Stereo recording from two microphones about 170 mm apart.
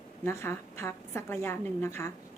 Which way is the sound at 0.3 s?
15° left (ahead or behind).